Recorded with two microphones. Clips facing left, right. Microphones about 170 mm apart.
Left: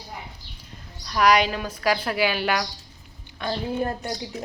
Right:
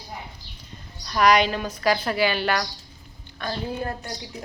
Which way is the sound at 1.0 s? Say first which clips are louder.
Right 1 dB; 5° left (ahead or behind).